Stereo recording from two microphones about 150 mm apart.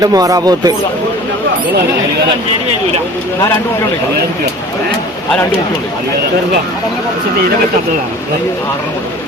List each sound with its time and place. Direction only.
0.0 s speech: 25° right (ahead or behind)